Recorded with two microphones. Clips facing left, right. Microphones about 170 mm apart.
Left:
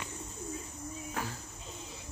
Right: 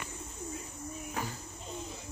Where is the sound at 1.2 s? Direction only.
Centre (ahead or behind).